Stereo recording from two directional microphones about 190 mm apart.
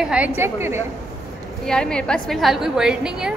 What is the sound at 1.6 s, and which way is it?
A woman's voice, 5° left (ahead or behind).